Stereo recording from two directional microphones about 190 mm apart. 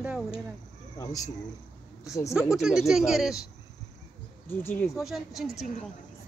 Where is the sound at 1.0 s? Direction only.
20° left (ahead or behind).